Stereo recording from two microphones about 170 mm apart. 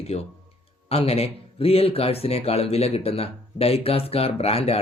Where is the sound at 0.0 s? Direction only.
35° left (ahead or behind).